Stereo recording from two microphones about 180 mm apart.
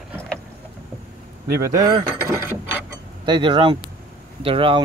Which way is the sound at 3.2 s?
25° right (ahead or behind).